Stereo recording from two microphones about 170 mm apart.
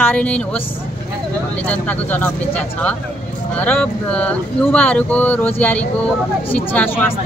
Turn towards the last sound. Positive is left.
turn(degrees=10)  # may be behind; listen again after turning